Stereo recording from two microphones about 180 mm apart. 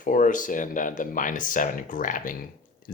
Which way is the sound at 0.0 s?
50° left (ahead or behind).